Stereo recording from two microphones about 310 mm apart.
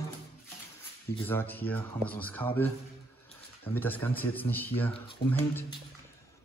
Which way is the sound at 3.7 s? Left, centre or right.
Centre.